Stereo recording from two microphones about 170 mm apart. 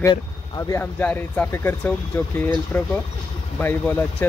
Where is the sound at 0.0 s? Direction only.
20° left (ahead or behind).